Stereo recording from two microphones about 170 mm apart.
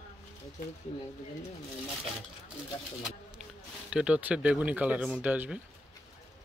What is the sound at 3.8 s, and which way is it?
Speech, 5° right (ahead or behind).